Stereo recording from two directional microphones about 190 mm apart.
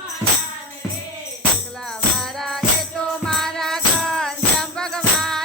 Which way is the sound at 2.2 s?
Centre (ahead or behind).